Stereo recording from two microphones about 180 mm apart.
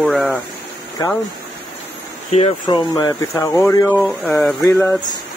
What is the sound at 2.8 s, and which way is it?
Speech, 20° left (ahead or behind).